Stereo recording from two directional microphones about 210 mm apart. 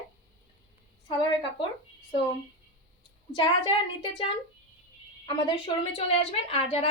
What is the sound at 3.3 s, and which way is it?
Speech, 20° left (ahead or behind).